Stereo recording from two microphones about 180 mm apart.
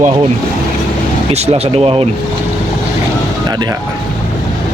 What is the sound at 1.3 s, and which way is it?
Speech, 35° right (ahead or behind).